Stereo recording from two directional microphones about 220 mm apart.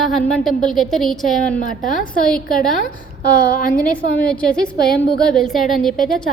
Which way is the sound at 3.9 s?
5° left (ahead or behind).